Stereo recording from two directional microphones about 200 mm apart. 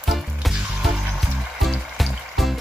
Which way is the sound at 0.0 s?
Centre (ahead or behind).